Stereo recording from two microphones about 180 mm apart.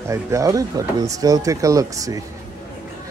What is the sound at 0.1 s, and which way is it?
Speech, 15° right (ahead or behind).